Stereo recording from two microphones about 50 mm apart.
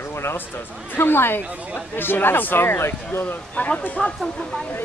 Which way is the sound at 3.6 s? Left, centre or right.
Left.